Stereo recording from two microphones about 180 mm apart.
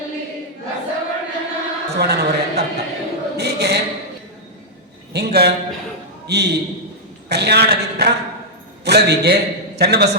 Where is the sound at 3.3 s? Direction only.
65° right (ahead or behind).